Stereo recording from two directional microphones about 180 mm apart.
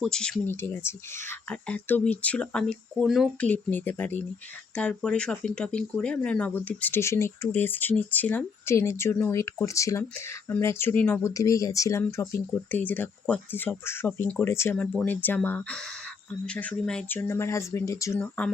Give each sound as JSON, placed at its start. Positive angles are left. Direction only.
{"t": 0.0, "sound": "speech", "side_deg": 5}